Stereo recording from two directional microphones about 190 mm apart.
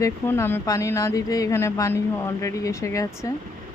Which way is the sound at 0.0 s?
15° left (ahead or behind).